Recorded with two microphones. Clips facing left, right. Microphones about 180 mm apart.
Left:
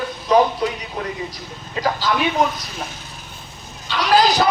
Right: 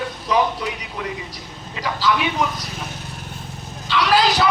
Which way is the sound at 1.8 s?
35° left (ahead or behind).